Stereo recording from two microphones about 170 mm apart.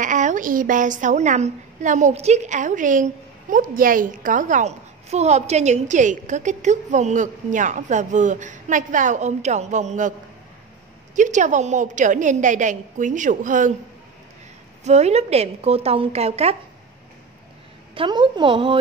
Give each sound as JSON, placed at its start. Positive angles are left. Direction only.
{"t": 0.0, "sound": "a woman's voice", "side_deg": -50}
{"t": 11.1, "sound": "a woman's voice", "side_deg": -45}
{"t": 14.9, "sound": "a woman's voice", "side_deg": -40}
{"t": 17.9, "sound": "speech", "side_deg": -30}